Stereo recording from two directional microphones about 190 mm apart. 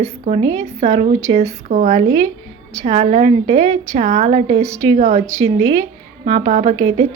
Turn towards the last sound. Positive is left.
turn(degrees=-30)  # may be behind; listen again after turning